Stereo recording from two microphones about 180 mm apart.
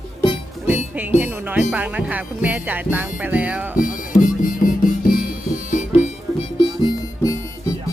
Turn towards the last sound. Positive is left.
turn(degrees=15)  # may be behind; listen again after turning